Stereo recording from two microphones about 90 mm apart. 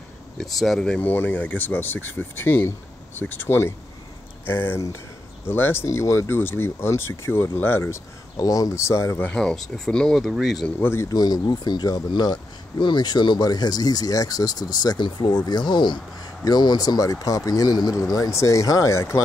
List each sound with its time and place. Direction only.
0.4 s speech: 5° left (ahead or behind)
1.0 s speech: 20° left (ahead or behind)
8.4 s speech: 40° left (ahead or behind)
9.2 s speech: 10° left (ahead or behind)
10.8 s speech: 25° left (ahead or behind)
11.1 s speech: 45° left (ahead or behind); by 19.2 s 30° left (ahead or behind)